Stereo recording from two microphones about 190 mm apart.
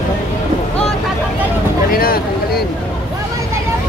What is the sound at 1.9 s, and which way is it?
Vehicle, 50° left (ahead or behind).